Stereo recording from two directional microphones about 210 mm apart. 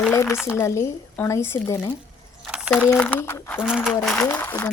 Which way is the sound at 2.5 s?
5° left (ahead or behind).